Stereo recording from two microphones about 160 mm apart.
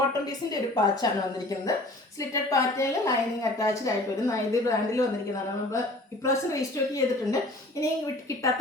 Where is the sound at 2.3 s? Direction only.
20° left (ahead or behind).